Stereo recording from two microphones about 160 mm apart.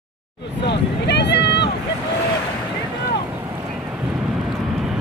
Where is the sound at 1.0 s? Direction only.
90° left.